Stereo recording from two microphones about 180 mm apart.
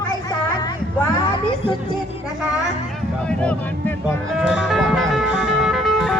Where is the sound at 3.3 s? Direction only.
5° left (ahead or behind).